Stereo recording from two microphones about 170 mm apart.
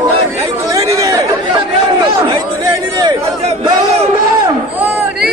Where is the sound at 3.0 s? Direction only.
25° right (ahead or behind).